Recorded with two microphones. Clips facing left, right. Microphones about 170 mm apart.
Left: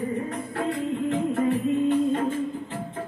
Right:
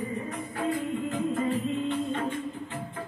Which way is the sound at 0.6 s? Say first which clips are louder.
Left 2 dB; 75° left (ahead or behind).